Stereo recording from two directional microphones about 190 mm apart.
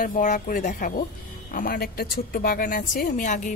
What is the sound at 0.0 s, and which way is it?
Speech, 45° left (ahead or behind).